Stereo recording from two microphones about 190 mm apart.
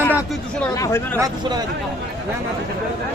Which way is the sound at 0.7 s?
15° left (ahead or behind).